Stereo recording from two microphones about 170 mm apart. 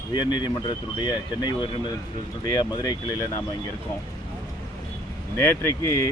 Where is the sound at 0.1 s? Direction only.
25° left (ahead or behind).